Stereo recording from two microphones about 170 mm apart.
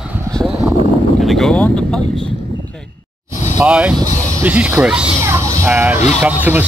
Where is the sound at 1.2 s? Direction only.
Centre (ahead or behind).